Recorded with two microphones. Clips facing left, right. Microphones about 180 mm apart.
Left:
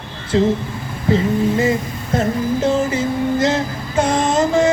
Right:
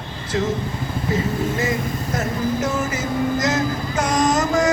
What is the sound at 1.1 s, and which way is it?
Music, 30° left (ahead or behind).